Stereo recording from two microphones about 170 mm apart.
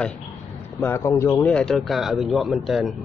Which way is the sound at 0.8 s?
15° left (ahead or behind).